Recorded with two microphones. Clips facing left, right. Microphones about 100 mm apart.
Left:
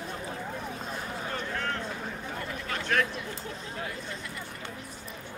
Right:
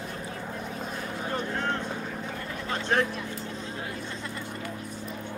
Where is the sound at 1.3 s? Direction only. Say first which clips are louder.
Right 4 dB; 25° right (ahead or behind).